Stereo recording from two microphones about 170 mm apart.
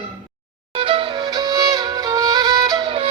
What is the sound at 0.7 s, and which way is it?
Music, 30° right (ahead or behind).